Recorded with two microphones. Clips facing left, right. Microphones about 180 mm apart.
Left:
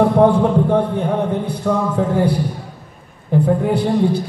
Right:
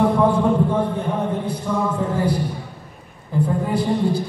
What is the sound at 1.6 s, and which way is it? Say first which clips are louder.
Speech: left 6 dB; 65° left (ahead or behind).